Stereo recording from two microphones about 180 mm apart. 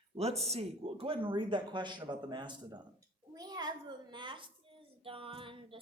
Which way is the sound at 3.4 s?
20° right (ahead or behind).